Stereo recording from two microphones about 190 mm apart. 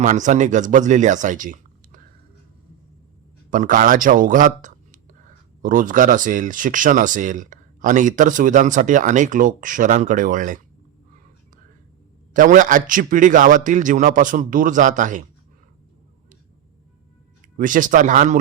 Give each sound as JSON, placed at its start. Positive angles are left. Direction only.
{"t": 0.0, "sound": "speech", "side_deg": -40}
{"t": 3.5, "sound": "speech", "side_deg": -45}
{"t": 12.3, "sound": "speech", "side_deg": -45}
{"t": 17.6, "sound": "speech", "side_deg": -45}